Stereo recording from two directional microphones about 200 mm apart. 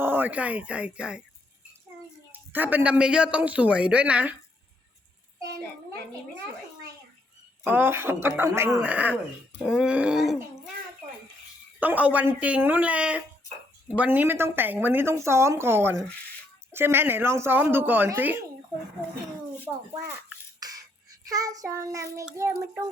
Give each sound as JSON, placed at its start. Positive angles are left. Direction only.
{"t": 0.0, "sound": "speech", "side_deg": -10}
{"t": 2.3, "sound": "speech", "side_deg": -10}
{"t": 7.6, "sound": "speech", "side_deg": -10}
{"t": 11.8, "sound": "speech", "side_deg": -10}
{"t": 20.6, "sound": "child singing", "side_deg": -20}
{"t": 22.3, "sound": "speech", "side_deg": -15}